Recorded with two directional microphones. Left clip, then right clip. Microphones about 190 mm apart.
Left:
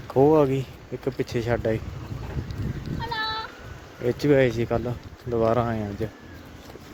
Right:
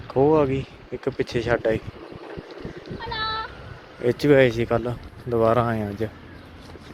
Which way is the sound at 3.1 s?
40° left (ahead or behind).